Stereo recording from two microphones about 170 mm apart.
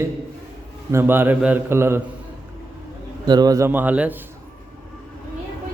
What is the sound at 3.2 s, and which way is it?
Speech, 25° right (ahead or behind).